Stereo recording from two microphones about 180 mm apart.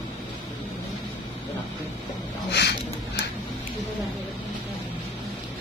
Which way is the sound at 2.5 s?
70° left (ahead or behind).